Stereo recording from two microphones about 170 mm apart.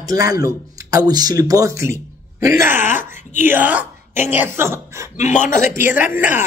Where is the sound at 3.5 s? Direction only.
10° right (ahead or behind).